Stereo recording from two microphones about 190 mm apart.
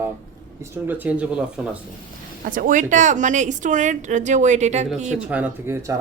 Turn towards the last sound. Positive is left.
turn(degrees=-10)  # may be behind; listen again after turning